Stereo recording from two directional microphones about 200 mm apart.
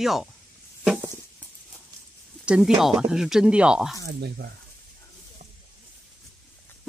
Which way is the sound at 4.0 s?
55° right (ahead or behind).